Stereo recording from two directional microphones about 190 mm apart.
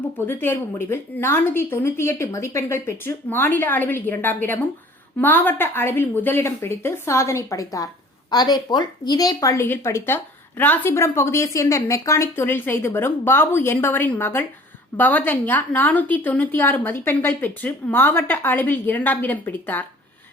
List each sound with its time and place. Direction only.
0.3 s a woman's voice: 10° left (ahead or behind)